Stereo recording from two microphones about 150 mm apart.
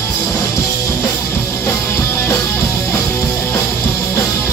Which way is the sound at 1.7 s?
20° left (ahead or behind).